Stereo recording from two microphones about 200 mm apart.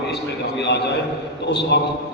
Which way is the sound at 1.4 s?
60° left (ahead or behind).